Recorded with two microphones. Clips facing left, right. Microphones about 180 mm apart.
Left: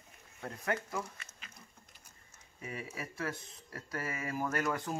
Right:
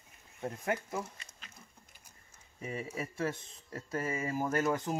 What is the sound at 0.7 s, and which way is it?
Speech, 20° right (ahead or behind).